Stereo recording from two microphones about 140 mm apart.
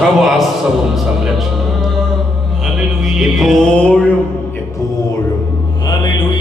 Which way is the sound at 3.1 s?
Centre (ahead or behind).